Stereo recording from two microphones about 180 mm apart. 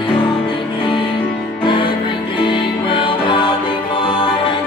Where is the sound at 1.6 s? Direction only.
25° left (ahead or behind).